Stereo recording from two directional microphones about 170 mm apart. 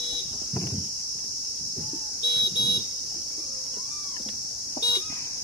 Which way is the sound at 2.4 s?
25° left (ahead or behind).